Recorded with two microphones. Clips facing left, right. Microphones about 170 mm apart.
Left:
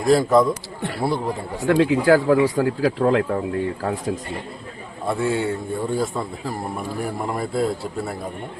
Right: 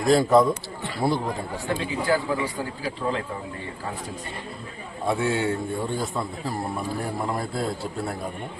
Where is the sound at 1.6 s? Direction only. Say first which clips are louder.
Left 11 dB; 85° left; by 3.2 s 70° left (ahead or behind).